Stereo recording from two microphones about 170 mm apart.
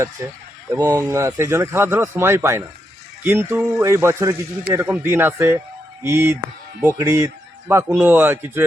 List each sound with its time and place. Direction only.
0.2 s speech: 15° right (ahead or behind)